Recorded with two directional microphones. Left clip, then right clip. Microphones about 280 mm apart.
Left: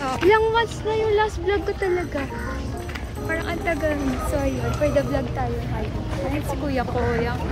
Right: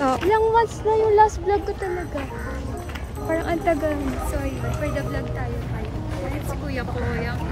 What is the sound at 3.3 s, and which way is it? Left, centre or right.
Music, right.